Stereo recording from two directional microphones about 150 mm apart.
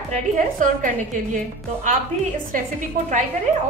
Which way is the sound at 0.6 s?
60° right (ahead or behind).